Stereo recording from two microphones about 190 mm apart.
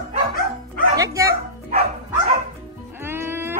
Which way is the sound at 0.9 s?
15° right (ahead or behind).